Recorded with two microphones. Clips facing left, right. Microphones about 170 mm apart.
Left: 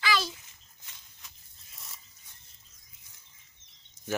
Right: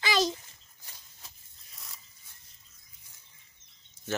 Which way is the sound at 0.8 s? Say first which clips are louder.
Right 2 dB; 40° right (ahead or behind).